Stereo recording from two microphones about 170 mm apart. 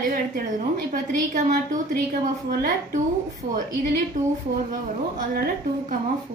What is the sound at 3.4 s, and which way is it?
Speech, 65° right (ahead or behind).